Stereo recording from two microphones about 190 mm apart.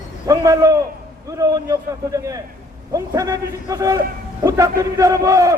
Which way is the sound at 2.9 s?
15° right (ahead or behind).